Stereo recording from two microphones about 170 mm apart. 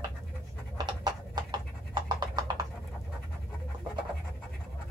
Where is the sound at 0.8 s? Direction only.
25° right (ahead or behind).